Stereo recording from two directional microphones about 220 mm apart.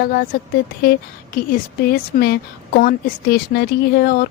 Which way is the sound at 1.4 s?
40° left (ahead or behind).